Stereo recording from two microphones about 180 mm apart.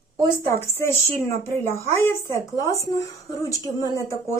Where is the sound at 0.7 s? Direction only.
15° left (ahead or behind).